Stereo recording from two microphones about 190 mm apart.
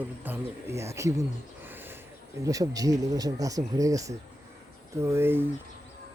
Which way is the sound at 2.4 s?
20° right (ahead or behind).